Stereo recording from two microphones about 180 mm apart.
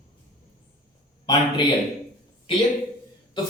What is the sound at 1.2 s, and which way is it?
Speech, 25° left (ahead or behind).